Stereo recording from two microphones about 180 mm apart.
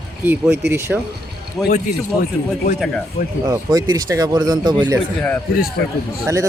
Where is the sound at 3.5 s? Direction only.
20° right (ahead or behind).